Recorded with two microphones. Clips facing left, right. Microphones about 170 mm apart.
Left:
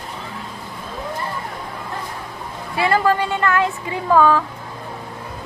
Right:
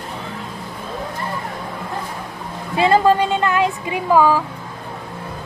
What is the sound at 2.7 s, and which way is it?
A woman's voice, 20° right (ahead or behind).